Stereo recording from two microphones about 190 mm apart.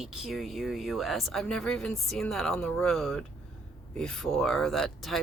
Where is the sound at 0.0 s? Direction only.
Centre (ahead or behind).